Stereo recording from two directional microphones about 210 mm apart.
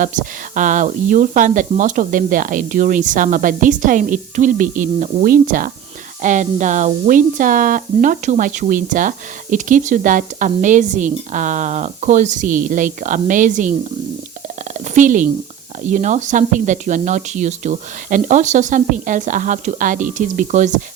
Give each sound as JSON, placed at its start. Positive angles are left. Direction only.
{"t": 0.0, "sound": "speech", "side_deg": -40}